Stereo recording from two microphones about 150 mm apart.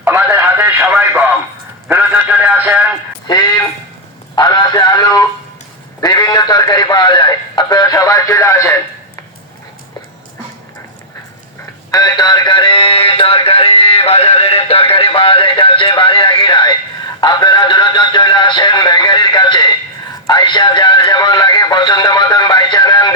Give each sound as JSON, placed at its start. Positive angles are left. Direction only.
{"t": 0.3, "sound": "radio", "side_deg": -15}
{"t": 0.8, "sound": "radio", "side_deg": -5}
{"t": 1.9, "sound": "a sound", "side_deg": -10}
{"t": 3.2, "sound": "a sound", "side_deg": 25}
{"t": 4.4, "sound": "a man's voice", "side_deg": 30}
{"t": 11.9, "sound": "a man's voice", "side_deg": 25}